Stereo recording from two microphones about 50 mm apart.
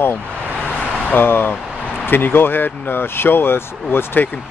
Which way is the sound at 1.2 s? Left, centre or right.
Left.